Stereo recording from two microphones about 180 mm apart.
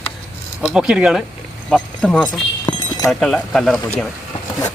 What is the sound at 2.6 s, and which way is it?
Clip-clop, 20° left (ahead or behind).